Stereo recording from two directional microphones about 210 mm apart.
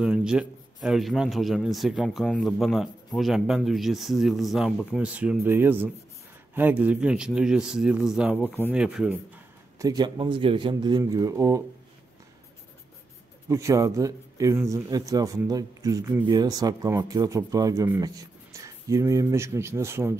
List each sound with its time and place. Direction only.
0.0 s a man's voice: 5° right (ahead or behind)
8.4 s speech: 10° left (ahead or behind)
8.7 s a man's voice: 5° right (ahead or behind)
9.8 s a man's voice: 20° right (ahead or behind)
13.5 s speech: 15° right (ahead or behind)